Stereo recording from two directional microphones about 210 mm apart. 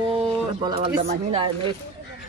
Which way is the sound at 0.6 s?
20° right (ahead or behind).